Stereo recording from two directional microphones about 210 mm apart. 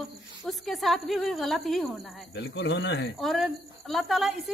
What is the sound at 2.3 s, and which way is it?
Speech, 55° left (ahead or behind).